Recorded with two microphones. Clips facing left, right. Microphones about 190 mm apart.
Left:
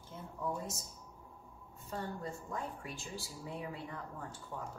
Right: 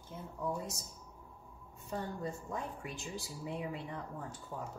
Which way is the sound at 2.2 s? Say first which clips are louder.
Right 2 dB; 20° right (ahead or behind).